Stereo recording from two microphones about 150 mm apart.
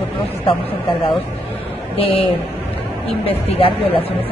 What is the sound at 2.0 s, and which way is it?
Speech, 35° left (ahead or behind).